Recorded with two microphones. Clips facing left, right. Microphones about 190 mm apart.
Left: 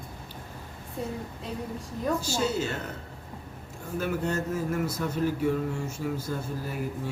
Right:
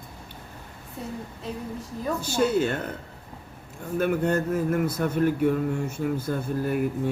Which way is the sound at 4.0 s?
55° right (ahead or behind).